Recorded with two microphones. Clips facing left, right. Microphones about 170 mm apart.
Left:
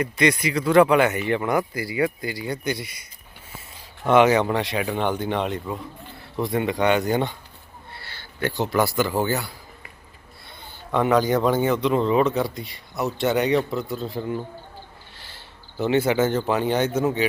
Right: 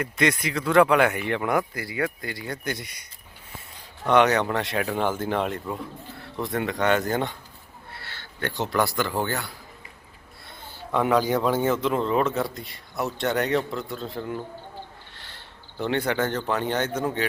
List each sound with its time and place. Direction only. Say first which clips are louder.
0.0 s a man's voice: left 3 dB; centre (ahead or behind)
4.0 s a man's voice: left 3 dB; 5° left (ahead or behind)
10.6 s a man's voice: left 2 dB; centre (ahead or behind)